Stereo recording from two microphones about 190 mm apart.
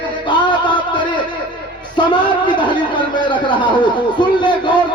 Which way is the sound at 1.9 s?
25° left (ahead or behind).